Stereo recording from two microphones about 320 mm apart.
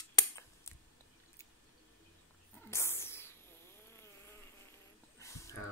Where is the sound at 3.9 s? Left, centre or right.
Centre.